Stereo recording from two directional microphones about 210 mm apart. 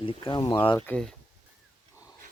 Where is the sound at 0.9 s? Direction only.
5° left (ahead or behind).